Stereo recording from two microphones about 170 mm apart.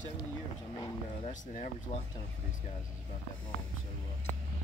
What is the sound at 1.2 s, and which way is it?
Speech, 50° left (ahead or behind).